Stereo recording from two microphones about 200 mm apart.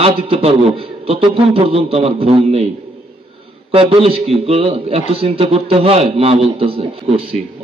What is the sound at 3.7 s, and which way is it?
A man's voice, 25° right (ahead or behind).